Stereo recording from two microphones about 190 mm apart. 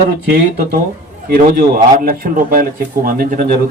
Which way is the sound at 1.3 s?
50° right (ahead or behind).